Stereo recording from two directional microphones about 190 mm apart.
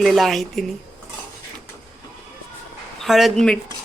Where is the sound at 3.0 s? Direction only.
Centre (ahead or behind).